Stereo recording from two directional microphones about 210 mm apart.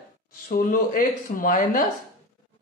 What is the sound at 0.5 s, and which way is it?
Speech, 40° left (ahead or behind).